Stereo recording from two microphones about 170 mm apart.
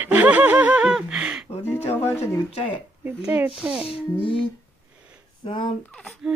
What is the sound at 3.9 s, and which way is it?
Child singing, 30° left (ahead or behind).